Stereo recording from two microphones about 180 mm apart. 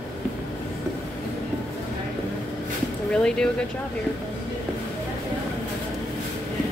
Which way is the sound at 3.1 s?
5° left (ahead or behind).